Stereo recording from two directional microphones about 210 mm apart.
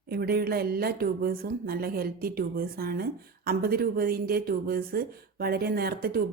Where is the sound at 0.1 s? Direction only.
45° right (ahead or behind).